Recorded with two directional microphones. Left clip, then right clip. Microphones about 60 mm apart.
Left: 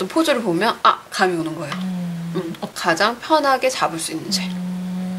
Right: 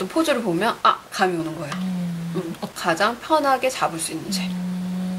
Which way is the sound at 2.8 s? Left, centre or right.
Centre.